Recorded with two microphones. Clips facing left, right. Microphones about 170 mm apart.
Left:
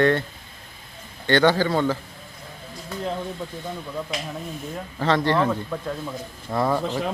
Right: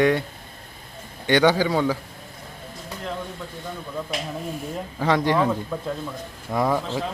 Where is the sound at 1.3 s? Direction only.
15° right (ahead or behind).